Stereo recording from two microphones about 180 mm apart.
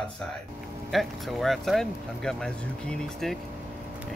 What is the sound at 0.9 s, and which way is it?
Speech, centre (ahead or behind).